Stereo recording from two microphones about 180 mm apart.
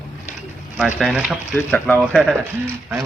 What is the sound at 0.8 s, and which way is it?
Speech, 5° right (ahead or behind).